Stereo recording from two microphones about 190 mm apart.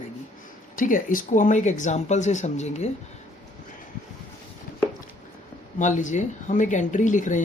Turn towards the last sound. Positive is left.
turn(degrees=40)  # may be behind; listen again after turning